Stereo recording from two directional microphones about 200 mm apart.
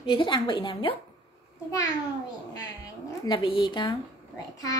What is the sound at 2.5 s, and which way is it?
Speech, 20° left (ahead or behind).